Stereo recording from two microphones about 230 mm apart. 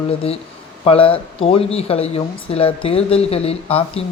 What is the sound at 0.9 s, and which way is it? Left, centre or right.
Speech, left.